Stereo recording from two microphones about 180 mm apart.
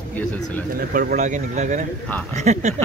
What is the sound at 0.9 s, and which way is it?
A man's voice, 55° right (ahead or behind).